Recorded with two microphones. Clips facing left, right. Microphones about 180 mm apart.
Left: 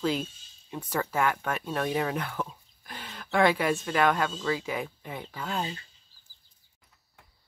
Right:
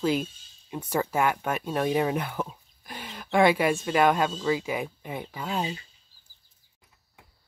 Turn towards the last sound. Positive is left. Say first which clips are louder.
# right 2 dB
turn(degrees=-10)  # may be behind; listen again after turning